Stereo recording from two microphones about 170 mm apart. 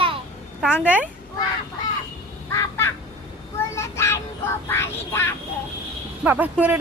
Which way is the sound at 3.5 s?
15° left (ahead or behind).